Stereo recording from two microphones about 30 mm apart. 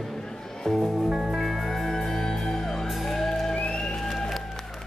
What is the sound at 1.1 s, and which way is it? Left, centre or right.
Music, right.